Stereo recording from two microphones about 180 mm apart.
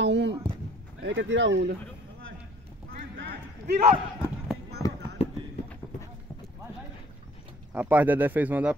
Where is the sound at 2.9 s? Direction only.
65° right (ahead or behind).